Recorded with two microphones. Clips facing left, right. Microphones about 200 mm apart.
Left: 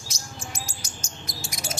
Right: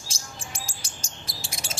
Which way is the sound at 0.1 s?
30° right (ahead or behind).